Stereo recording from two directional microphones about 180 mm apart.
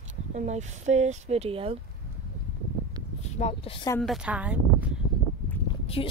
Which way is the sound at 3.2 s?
40° left (ahead or behind).